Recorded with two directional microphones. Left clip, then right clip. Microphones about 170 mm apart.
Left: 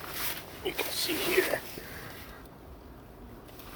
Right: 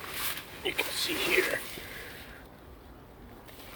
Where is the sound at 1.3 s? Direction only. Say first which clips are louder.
Even; 5° right (ahead or behind).